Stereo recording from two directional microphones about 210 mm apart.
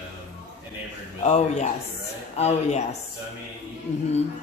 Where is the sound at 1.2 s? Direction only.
35° left (ahead or behind).